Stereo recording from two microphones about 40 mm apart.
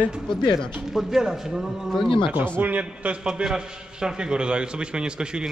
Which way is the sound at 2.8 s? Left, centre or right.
Right.